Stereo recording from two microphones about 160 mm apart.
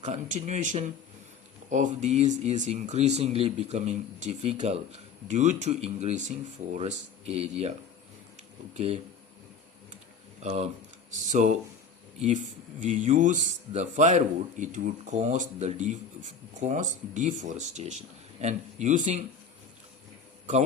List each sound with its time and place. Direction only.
0.0 s speech: 45° right (ahead or behind)
8.7 s speech: 40° right (ahead or behind)
10.4 s speech: 40° right (ahead or behind)